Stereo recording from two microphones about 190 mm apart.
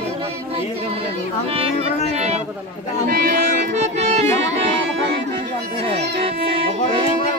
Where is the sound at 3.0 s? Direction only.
50° right (ahead or behind).